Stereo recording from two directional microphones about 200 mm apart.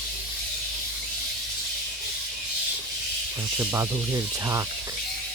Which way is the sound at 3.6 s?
15° right (ahead or behind).